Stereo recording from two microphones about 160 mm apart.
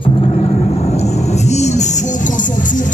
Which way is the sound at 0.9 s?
45° left (ahead or behind).